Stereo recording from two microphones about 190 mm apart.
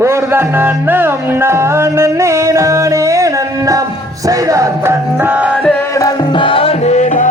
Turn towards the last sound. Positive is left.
turn(degrees=40)  # may be behind; listen again after turning